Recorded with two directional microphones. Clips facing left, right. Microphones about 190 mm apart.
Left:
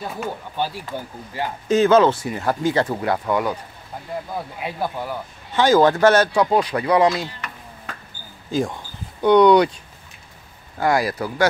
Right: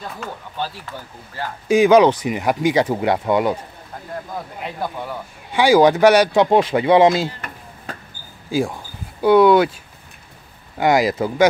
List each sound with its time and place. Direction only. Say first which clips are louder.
0.0 s speech: left 3 dB; 15° left (ahead or behind)
1.7 s speech: right 3 dB; 15° right (ahead or behind)
4.3 s speech: left 1 dB; 5° left (ahead or behind)
5.5 s speech: right 2 dB; 10° right (ahead or behind)
8.5 s speech: right 2 dB; 10° right (ahead or behind)
10.8 s speech: right 4 dB; 20° right (ahead or behind)